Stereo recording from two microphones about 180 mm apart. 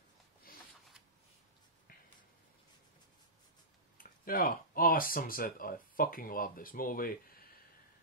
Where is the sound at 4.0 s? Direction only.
55° left (ahead or behind).